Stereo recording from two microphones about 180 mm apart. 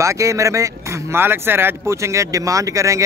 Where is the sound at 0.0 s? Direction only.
15° right (ahead or behind).